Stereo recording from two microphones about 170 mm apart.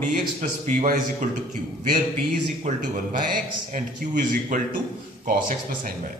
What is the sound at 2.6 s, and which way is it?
A man's voice, 50° right (ahead or behind).